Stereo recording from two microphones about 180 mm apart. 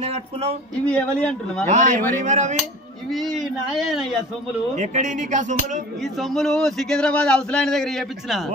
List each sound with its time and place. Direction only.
0.0 s a sound: 35° right (ahead or behind)
0.8 s a man's voice: 5° left (ahead or behind)
1.7 s speech: 45° right (ahead or behind)
3.1 s a man's voice: centre (ahead or behind)
4.7 s speech: 40° right (ahead or behind)
6.1 s a man's voice: centre (ahead or behind)